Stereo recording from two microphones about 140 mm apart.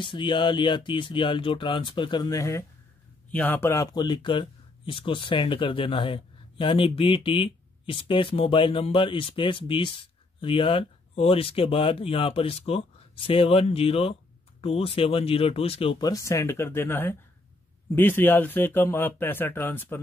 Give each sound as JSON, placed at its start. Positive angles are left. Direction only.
{"t": 0.0, "sound": "speech", "side_deg": 35}
{"t": 3.3, "sound": "speech", "side_deg": 10}
{"t": 16.0, "sound": "speech", "side_deg": 25}